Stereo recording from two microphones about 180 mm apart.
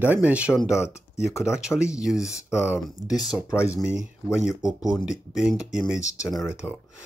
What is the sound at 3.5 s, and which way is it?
Speech, 15° left (ahead or behind).